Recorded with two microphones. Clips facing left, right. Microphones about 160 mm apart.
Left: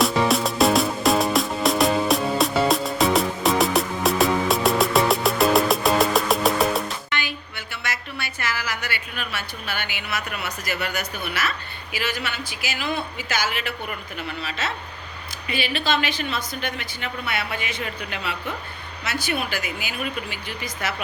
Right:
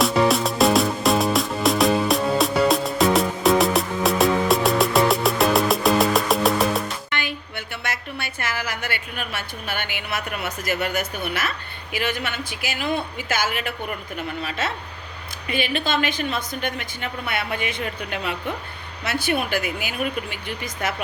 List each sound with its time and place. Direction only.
0.0 s music: centre (ahead or behind)
7.1 s a woman's voice: 55° right (ahead or behind)